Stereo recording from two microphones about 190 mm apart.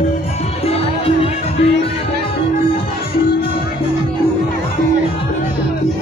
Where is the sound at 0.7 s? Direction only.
30° left (ahead or behind).